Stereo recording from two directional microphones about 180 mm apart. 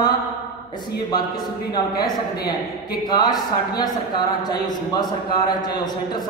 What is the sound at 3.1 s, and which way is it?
A man's voice, 20° left (ahead or behind).